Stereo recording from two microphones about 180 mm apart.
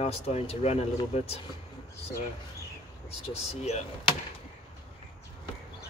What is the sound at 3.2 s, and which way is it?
Speech, 35° left (ahead or behind).